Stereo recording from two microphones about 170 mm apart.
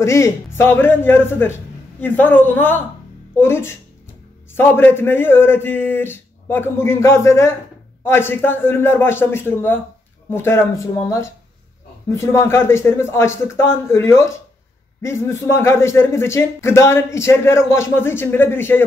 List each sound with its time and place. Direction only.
0.0 s speech: 15° left (ahead or behind)